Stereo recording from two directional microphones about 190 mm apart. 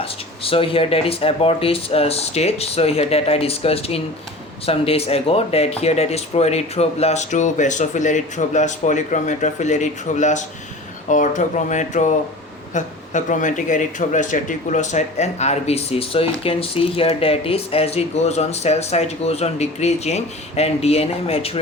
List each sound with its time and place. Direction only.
0.0 s speech: 30° left (ahead or behind)